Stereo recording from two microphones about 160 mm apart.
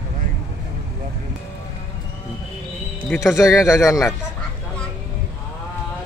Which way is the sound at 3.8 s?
20° left (ahead or behind).